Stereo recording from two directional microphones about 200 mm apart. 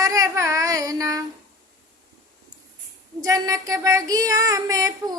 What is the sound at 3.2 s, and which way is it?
Child singing, 15° right (ahead or behind).